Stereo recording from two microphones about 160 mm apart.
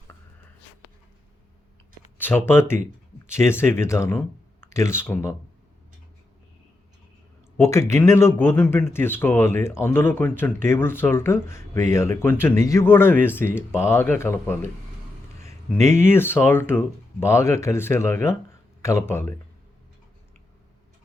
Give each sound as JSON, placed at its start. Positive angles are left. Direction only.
{"t": 2.1, "sound": "speech", "side_deg": 10}
{"t": 7.6, "sound": "speech", "side_deg": 20}